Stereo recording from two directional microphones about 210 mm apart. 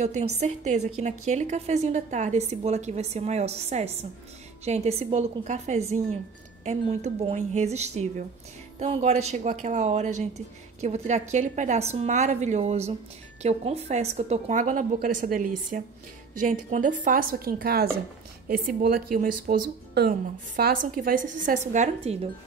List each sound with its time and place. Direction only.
0.0 s a woman's voice: 35° right (ahead or behind)
17.0 s a woman's voice: 40° right (ahead or behind)